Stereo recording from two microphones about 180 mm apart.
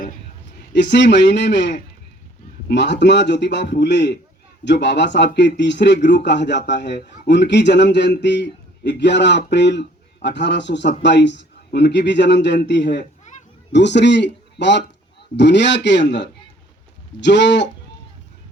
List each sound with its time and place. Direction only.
0.7 s speech: 75° left (ahead or behind)